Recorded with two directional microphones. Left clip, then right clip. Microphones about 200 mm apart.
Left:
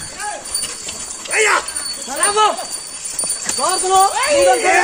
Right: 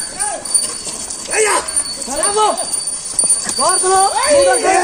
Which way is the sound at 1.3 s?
15° right (ahead or behind).